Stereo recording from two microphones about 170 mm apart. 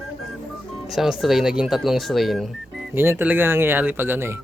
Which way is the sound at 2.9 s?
15° right (ahead or behind).